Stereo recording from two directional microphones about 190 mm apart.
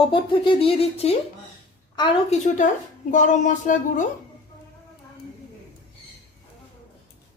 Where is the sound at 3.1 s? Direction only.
40° left (ahead or behind).